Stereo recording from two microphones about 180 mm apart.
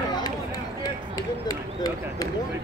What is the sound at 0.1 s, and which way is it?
Run, 20° left (ahead or behind).